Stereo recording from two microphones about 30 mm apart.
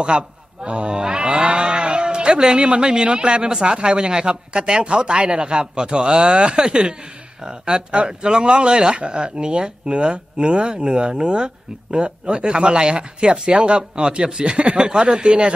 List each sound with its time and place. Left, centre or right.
0.0 s a man's voice: right
0.9 s livestock: right
2.5 s speech: right
14.8 s speech: right